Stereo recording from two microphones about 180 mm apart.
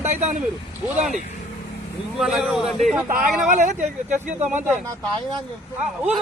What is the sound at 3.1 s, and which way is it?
Speech, 45° right (ahead or behind).